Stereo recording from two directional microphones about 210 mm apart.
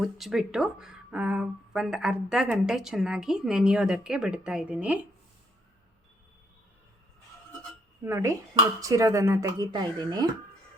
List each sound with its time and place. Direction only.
0.0 s speech: centre (ahead or behind)
8.0 s speech: 10° right (ahead or behind)